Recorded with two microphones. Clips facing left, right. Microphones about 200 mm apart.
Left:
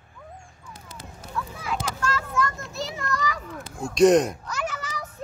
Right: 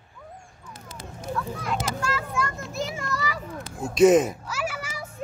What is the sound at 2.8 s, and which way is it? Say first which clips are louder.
Children playing: left 4 dB; 5° right (ahead or behind).